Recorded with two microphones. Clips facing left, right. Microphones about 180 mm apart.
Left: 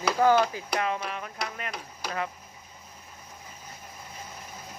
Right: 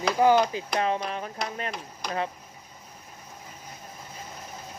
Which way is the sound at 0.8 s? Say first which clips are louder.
Right 3 dB; 35° right (ahead or behind).